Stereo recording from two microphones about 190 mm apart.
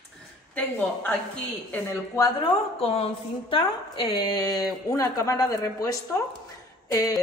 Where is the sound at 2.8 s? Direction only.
30° left (ahead or behind).